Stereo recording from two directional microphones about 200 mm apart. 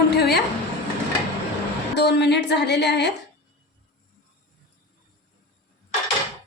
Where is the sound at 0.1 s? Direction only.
55° left (ahead or behind).